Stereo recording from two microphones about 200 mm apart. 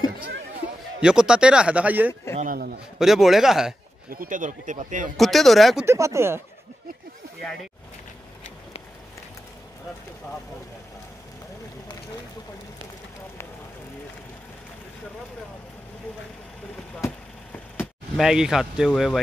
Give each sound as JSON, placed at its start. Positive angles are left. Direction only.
{"t": 1.0, "sound": "speech", "side_deg": -5}
{"t": 2.3, "sound": "a man's voice", "side_deg": -45}
{"t": 3.0, "sound": "speech", "side_deg": 0}
{"t": 4.1, "sound": "speech", "side_deg": -45}
{"t": 5.1, "sound": "speech", "side_deg": 0}
{"t": 5.9, "sound": "speech", "side_deg": -15}
{"t": 18.1, "sound": "speech", "side_deg": 0}